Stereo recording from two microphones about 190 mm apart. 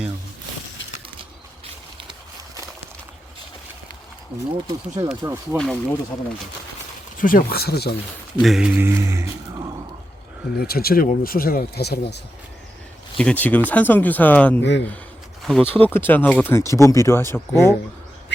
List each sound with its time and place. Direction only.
5.2 s speech: 15° right (ahead or behind)
5.5 s speech: 5° left (ahead or behind)
7.2 s speech: 45° left (ahead or behind)
8.4 s speech: centre (ahead or behind)
10.6 s speech: 55° left (ahead or behind)
13.1 s speech: 5° left (ahead or behind)
14.6 s speech: 65° left (ahead or behind)
15.4 s a sound: centre (ahead or behind)
15.7 s speech: 10° left (ahead or behind)